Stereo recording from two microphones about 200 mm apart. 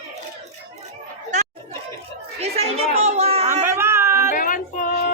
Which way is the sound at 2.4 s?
30° right (ahead or behind).